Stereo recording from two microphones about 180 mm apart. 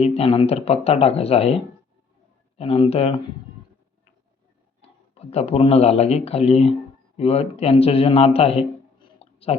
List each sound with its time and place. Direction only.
0.0 s speech: 35° left (ahead or behind)
2.6 s speech: 30° left (ahead or behind)
4.8 s a man's voice: 35° left (ahead or behind)